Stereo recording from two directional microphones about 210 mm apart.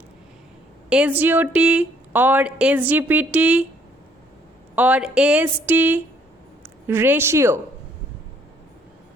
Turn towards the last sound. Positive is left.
turn(degrees=-10)  # may be behind; listen again after turning